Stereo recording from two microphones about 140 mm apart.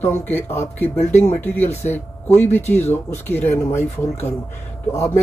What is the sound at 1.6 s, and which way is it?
Speech, 50° left (ahead or behind).